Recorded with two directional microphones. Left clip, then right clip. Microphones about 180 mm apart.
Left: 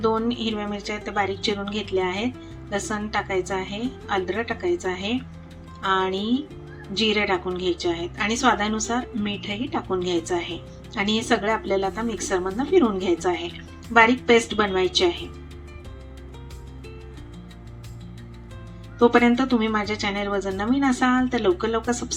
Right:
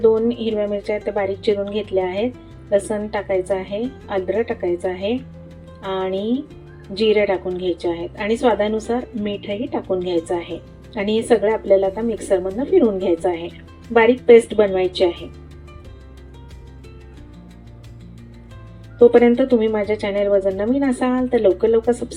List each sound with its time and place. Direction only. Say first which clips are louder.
0.0 s speech: right 7 dB; 20° right (ahead or behind)
18.9 s speech: right 6 dB; 20° right (ahead or behind)